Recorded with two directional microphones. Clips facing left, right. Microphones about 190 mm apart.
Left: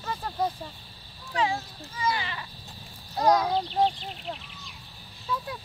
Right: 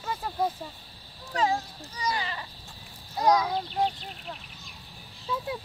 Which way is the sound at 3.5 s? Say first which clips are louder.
Left 3 dB; 30° left (ahead or behind).